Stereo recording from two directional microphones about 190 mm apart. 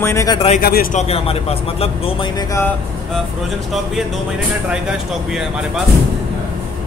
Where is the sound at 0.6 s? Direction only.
55° left (ahead or behind).